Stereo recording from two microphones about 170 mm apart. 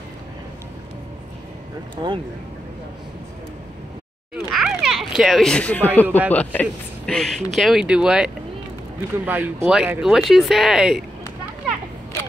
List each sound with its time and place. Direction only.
2.0 s speech: 30° right (ahead or behind)
4.5 s children playing: 5° right (ahead or behind)
6.0 s speech: 10° right (ahead or behind)
6.3 s speech: 10° left (ahead or behind)